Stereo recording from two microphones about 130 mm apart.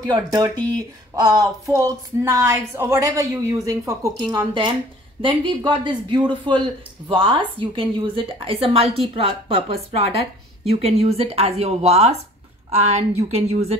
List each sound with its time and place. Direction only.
0.0 s a woman's voice: 35° right (ahead or behind); by 13.0 s 55° right (ahead or behind)